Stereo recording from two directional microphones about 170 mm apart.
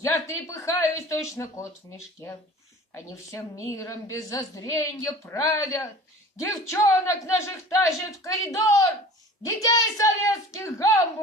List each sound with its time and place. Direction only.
0.0 s a woman's voice: 20° left (ahead or behind)
9.4 s a woman's voice: 20° left (ahead or behind)